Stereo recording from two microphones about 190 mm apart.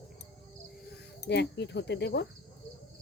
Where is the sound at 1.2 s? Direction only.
65° left (ahead or behind).